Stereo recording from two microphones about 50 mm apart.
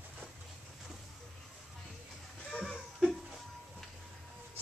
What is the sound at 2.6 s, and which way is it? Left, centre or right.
Laughter, centre.